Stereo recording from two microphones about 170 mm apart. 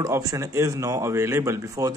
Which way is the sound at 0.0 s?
20° right (ahead or behind).